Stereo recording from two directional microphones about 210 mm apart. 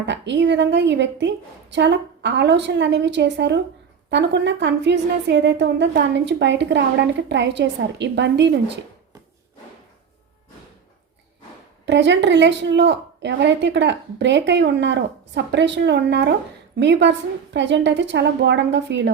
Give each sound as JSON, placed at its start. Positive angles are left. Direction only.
{"t": 0.0, "sound": "a woman's voice", "side_deg": -55}
{"t": 11.9, "sound": "a woman's voice", "side_deg": -55}